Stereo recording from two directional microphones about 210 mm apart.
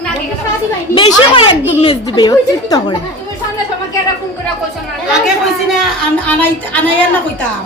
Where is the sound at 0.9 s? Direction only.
25° left (ahead or behind).